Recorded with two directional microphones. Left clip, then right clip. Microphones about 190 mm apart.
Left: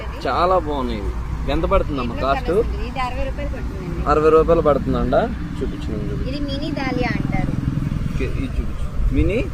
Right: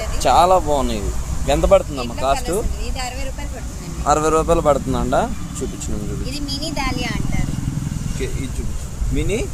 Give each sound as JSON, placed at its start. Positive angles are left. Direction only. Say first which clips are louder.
{"t": 0.2, "sound": "speech", "louder": "right 4 dB", "side_deg": -85}
{"t": 4.0, "sound": "speech", "louder": "left 2 dB", "side_deg": -90}
{"t": 6.5, "sound": "speech", "louder": "right 2 dB", "side_deg": -30}